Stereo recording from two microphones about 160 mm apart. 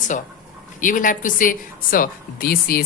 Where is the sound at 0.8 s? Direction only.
55° left (ahead or behind).